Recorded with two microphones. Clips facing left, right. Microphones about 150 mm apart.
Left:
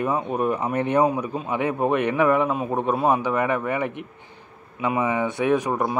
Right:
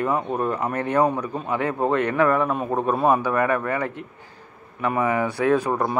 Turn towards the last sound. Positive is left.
turn(degrees=20)  # may be behind; listen again after turning